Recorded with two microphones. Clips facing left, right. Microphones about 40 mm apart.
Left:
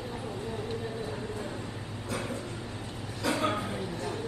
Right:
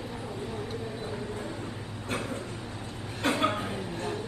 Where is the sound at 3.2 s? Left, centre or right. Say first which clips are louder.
Right 2 dB; right.